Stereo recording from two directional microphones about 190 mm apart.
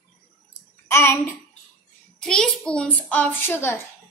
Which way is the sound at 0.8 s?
15° left (ahead or behind).